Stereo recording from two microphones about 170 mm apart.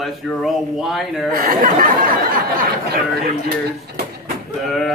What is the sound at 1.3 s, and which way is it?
Speech, 55° right (ahead or behind).